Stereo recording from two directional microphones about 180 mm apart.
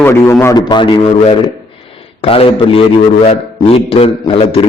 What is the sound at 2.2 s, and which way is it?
A man's voice, 30° left (ahead or behind).